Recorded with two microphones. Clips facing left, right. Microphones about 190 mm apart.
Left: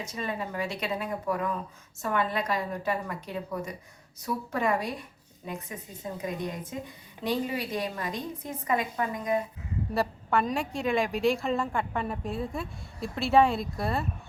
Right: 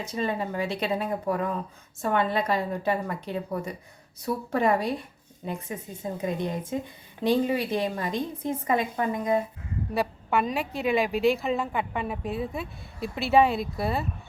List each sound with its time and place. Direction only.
0.1 s a woman's voice: 30° right (ahead or behind)
9.9 s a woman's voice: centre (ahead or behind)